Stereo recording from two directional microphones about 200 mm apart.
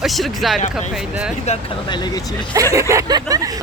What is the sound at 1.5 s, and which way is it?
Speech, 25° left (ahead or behind).